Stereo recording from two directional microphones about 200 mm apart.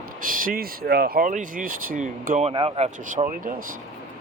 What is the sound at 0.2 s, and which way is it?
Speech, 45° right (ahead or behind).